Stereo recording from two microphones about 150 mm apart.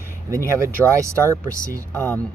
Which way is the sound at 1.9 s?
10° left (ahead or behind).